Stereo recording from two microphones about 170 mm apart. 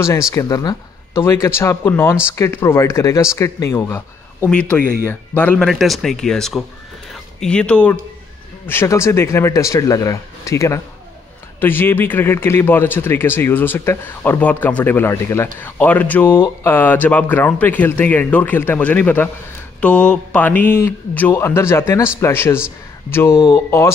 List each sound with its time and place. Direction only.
0.3 s speech: 20° left (ahead or behind); by 6.6 s centre (ahead or behind)
7.1 s a sound: 5° left (ahead or behind)
8.6 s speech: 15° left (ahead or behind)